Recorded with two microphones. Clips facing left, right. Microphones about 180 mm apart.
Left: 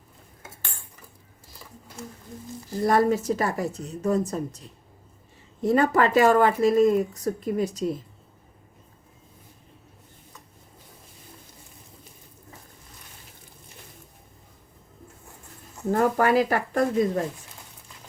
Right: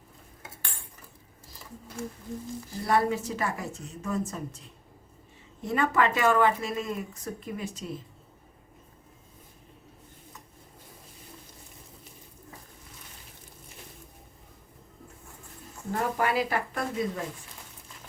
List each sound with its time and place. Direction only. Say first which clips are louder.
2.8 s speech: left 5 dB; 40° left (ahead or behind)
5.6 s speech: left 5 dB; 35° left (ahead or behind)
15.9 s speech: left 7 dB; 50° left (ahead or behind)